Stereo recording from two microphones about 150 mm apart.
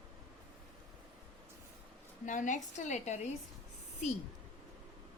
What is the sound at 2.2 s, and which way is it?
Speech, 60° left (ahead or behind).